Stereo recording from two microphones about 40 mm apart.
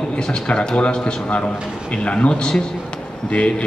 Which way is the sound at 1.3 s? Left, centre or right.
Left.